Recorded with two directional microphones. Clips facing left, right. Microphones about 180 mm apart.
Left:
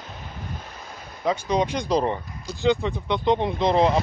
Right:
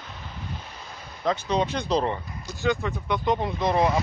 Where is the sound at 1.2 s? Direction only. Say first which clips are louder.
Left 2 dB; 15° left (ahead or behind).